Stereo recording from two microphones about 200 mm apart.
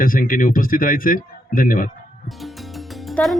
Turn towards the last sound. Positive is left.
turn(degrees=0)  # may be behind; listen again after turning